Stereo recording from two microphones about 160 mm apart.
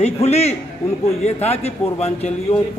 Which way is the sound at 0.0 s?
40° left (ahead or behind).